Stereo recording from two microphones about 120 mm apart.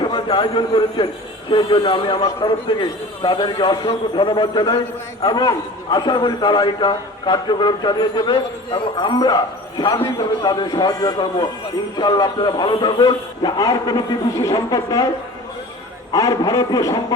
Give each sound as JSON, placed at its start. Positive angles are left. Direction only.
{"t": 0.1, "sound": "a man's voice", "side_deg": 40}
{"t": 16.1, "sound": "a man's voice", "side_deg": 30}